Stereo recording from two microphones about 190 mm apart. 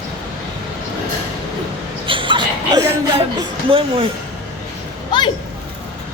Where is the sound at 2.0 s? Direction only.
25° right (ahead or behind).